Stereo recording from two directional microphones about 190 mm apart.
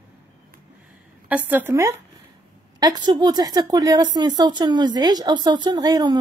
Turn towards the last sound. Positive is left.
turn(degrees=-20)  # may be behind; listen again after turning